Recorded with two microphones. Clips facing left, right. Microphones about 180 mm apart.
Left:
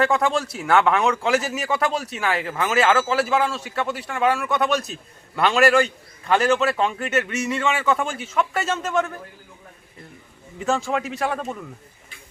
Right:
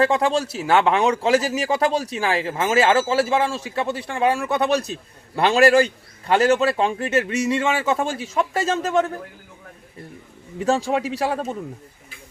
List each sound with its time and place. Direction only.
0.0 s speech: 30° right (ahead or behind)
10.7 s speech: 35° right (ahead or behind)